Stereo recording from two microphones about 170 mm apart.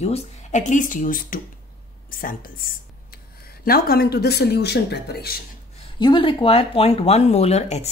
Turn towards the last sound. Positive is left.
turn(degrees=40)  # may be behind; listen again after turning